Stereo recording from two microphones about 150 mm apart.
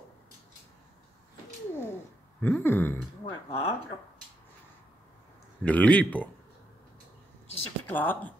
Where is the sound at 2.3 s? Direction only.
10° left (ahead or behind).